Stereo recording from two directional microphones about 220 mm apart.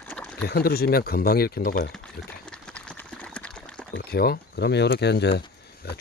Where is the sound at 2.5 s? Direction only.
5° left (ahead or behind).